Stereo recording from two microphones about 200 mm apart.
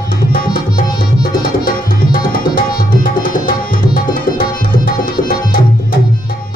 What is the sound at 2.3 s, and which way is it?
Tabla, 45° left (ahead or behind).